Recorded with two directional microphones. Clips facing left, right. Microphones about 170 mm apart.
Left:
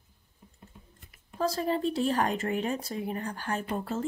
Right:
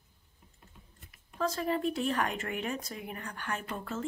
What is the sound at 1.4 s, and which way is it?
Speech, 35° left (ahead or behind).